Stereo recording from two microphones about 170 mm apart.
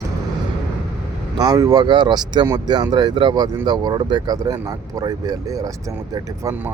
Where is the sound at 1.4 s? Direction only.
20° right (ahead or behind).